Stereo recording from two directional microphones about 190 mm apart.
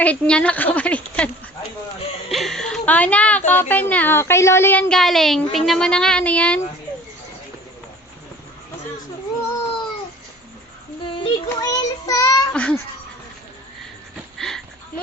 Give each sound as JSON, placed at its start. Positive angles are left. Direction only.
{"t": 0.0, "sound": "speech", "side_deg": 5}
{"t": 2.3, "sound": "speech", "side_deg": 0}
{"t": 11.2, "sound": "child singing", "side_deg": 20}
{"t": 12.5, "sound": "babbling", "side_deg": 5}
{"t": 14.3, "sound": "a sound", "side_deg": 0}